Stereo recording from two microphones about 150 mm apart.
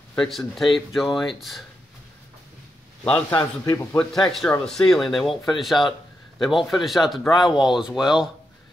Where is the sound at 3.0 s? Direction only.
15° left (ahead or behind).